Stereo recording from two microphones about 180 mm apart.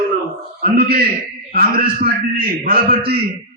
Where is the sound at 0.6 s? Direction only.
55° right (ahead or behind).